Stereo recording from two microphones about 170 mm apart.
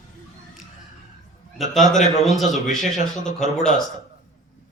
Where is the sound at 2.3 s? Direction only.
Centre (ahead or behind).